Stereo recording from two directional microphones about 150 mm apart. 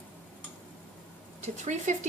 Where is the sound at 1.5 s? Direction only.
50° right (ahead or behind).